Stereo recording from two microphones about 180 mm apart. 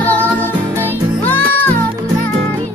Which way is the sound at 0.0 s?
10° left (ahead or behind).